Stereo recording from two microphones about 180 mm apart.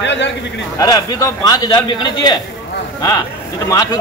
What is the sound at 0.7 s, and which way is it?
A man's voice, 20° left (ahead or behind).